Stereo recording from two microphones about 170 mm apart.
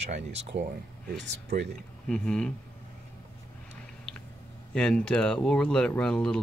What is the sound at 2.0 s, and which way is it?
Speech, 5° left (ahead or behind).